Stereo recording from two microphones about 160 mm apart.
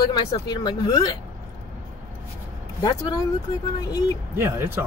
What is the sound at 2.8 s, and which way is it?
Speech, 25° left (ahead or behind).